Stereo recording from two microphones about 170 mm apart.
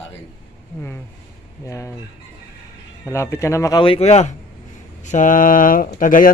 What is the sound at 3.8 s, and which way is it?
A man's voice, 35° left (ahead or behind).